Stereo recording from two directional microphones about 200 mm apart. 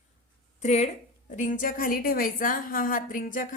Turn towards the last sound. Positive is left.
turn(degrees=40)  # may be behind; listen again after turning